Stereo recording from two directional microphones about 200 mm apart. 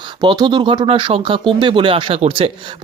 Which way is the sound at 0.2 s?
20° right (ahead or behind).